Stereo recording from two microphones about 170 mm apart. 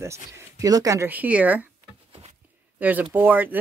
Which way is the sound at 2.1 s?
35° right (ahead or behind).